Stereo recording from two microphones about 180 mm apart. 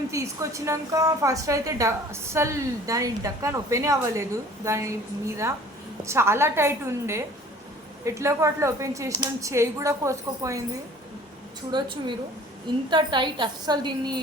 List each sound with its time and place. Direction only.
0.1 s a woman's voice: 15° right (ahead or behind)
11.7 s a woman's voice: 25° right (ahead or behind)